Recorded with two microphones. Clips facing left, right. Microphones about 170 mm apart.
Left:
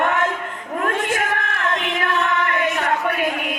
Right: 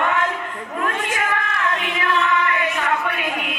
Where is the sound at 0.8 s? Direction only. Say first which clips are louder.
Left 2 dB; 45° left (ahead or behind).